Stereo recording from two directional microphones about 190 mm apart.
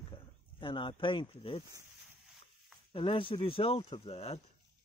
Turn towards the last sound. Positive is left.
turn(degrees=35)  # may be behind; listen again after turning